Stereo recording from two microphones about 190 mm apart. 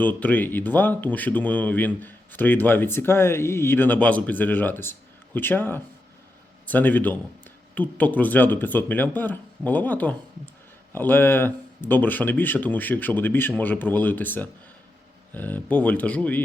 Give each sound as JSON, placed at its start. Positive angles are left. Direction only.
{"t": 0.0, "sound": "speech", "side_deg": 10}